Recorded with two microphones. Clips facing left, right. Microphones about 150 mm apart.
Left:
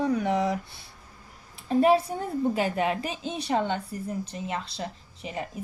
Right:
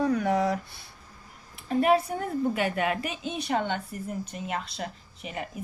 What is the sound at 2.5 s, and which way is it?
A woman's voice, 30° left (ahead or behind).